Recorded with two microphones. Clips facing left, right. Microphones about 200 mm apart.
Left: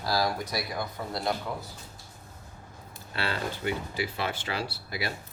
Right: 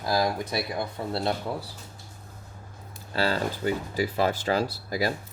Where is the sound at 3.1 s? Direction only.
40° right (ahead or behind).